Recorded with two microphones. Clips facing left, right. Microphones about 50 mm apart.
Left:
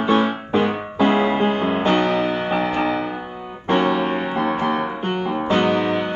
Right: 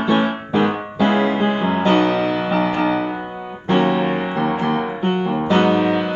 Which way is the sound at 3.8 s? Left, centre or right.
Right.